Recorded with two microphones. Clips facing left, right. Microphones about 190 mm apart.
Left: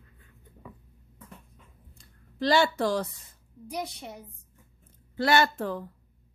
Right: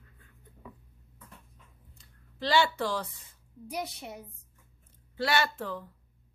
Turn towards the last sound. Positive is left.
turn(degrees=50)  # may be behind; listen again after turning